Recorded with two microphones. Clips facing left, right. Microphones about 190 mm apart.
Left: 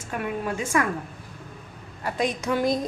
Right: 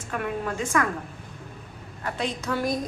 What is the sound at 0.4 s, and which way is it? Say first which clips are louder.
Speech: left 1 dB; 10° left (ahead or behind).